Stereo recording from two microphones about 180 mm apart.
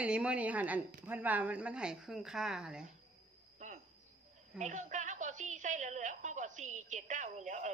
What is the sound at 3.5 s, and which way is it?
Cricket, 40° right (ahead or behind).